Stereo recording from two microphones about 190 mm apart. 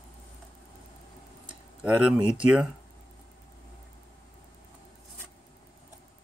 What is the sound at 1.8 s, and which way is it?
Speech, 5° right (ahead or behind).